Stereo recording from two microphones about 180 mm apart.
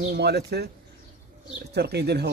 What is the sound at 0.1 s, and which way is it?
Speech, 65° right (ahead or behind).